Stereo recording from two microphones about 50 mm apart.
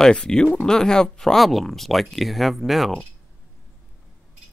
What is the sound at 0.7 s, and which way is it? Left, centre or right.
Speech, centre.